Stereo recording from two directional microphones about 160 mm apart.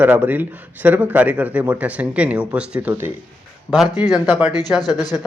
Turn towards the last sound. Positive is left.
turn(degrees=25)  # may be behind; listen again after turning